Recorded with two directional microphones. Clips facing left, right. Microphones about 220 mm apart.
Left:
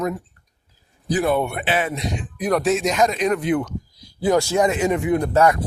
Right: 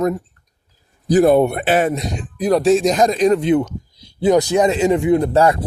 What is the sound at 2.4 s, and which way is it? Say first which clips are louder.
Speech: right 6 dB; 30° right (ahead or behind).